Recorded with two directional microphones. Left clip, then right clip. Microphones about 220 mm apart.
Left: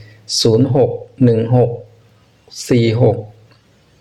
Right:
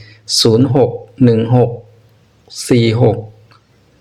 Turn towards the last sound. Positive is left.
turn(degrees=-10)  # may be behind; listen again after turning